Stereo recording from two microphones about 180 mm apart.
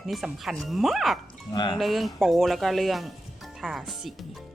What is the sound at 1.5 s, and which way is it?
Speech, 25° left (ahead or behind).